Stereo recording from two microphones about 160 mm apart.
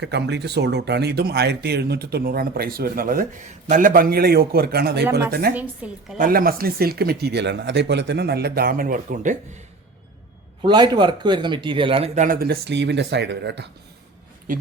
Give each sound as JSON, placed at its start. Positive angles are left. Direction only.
{"t": 0.0, "sound": "speech", "side_deg": -90}
{"t": 5.5, "sound": "a woman's voice", "side_deg": -10}
{"t": 6.1, "sound": "speech", "side_deg": -65}
{"t": 10.6, "sound": "a man's voice", "side_deg": -30}
{"t": 14.5, "sound": "speech", "side_deg": -60}